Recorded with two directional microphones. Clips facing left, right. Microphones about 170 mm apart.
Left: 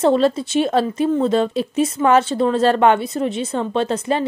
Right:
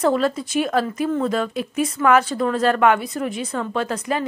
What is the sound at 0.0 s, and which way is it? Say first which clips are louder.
Speech: left 4 dB; 25° left (ahead or behind).